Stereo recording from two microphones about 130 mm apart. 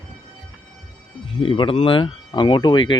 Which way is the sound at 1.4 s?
45° left (ahead or behind).